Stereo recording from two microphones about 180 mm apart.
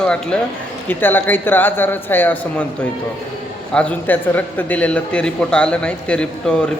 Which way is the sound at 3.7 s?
5° left (ahead or behind).